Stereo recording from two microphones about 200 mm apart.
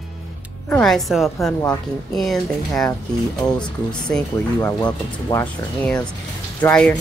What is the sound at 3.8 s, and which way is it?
Speech, 5° left (ahead or behind).